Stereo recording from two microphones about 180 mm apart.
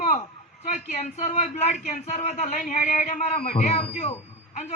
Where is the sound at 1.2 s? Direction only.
40° left (ahead or behind).